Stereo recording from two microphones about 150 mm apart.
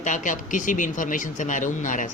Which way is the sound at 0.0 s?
60° left (ahead or behind).